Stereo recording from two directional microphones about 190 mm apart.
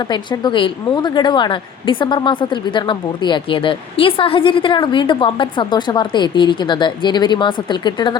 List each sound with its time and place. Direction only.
0.0 s a woman's voice: 25° left (ahead or behind)